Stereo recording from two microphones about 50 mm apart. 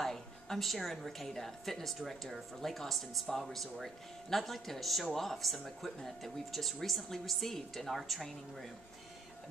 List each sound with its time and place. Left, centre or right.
0.0 s a woman's voice: centre